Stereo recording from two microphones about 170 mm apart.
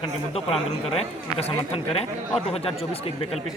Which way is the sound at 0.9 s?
40° left (ahead or behind).